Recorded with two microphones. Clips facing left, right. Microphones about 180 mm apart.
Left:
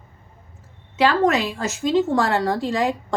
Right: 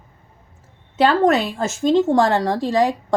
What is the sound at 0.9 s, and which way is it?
A woman's voice, 50° right (ahead or behind).